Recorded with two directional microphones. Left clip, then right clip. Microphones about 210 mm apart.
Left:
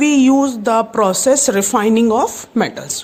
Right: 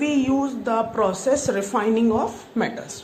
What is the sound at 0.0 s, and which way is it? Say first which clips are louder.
A woman's voice: left 9 dB; 55° left (ahead or behind).